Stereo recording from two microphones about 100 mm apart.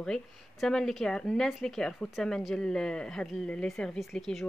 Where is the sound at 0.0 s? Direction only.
5° left (ahead or behind).